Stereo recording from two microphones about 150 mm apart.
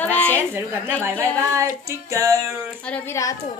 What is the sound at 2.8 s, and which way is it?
Speech, 10° left (ahead or behind).